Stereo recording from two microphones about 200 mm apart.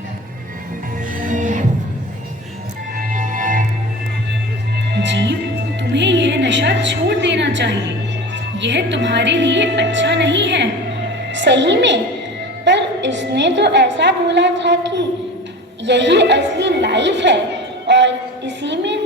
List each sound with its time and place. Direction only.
1.2 s music: 40° right (ahead or behind)
3.0 s music: 40° right (ahead or behind)
4.9 s music: 60° right (ahead or behind)
8.5 s a woman's voice: 65° right (ahead or behind)
17.8 s a sound: 60° right (ahead or behind)